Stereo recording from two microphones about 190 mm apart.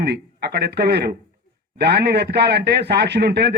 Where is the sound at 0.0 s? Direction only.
60° right (ahead or behind).